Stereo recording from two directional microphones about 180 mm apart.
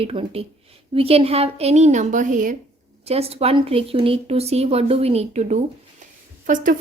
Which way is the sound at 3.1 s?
35° right (ahead or behind).